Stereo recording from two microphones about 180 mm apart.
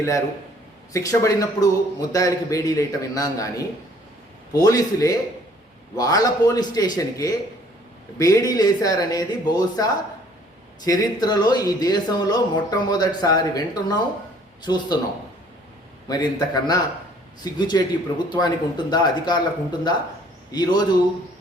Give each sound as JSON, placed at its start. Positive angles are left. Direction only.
{"t": 0.9, "sound": "speech", "side_deg": 15}
{"t": 4.5, "sound": "speech", "side_deg": 20}
{"t": 16.0, "sound": "speech", "side_deg": 20}